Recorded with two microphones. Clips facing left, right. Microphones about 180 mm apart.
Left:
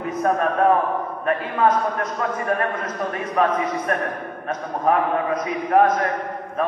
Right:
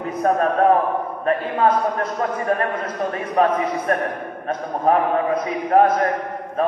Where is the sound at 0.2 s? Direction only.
30° right (ahead or behind).